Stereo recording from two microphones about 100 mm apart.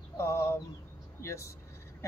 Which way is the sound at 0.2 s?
25° left (ahead or behind).